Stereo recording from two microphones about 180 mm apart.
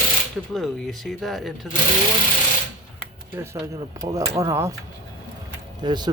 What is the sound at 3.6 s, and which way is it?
Speech, 30° right (ahead or behind).